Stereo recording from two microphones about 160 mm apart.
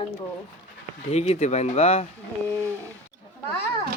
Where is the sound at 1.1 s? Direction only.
40° left (ahead or behind).